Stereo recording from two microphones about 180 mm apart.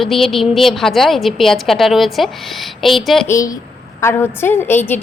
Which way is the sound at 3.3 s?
20° left (ahead or behind).